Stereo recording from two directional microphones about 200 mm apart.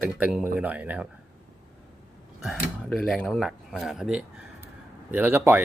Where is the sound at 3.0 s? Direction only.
Centre (ahead or behind).